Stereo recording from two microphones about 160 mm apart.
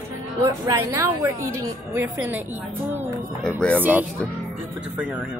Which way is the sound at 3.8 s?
10° right (ahead or behind).